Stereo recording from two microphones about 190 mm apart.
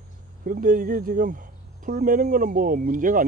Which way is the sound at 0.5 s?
45° right (ahead or behind).